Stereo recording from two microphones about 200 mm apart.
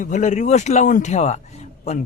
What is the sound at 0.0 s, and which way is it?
A man's voice, 40° left (ahead or behind).